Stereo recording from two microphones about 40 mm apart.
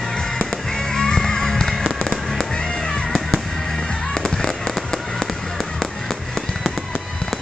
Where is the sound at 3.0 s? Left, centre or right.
Centre.